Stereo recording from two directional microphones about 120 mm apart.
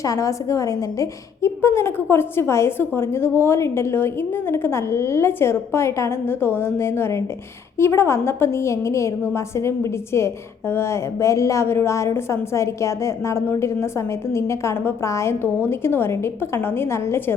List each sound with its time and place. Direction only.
0.0 s a woman's voice: 25° left (ahead or behind)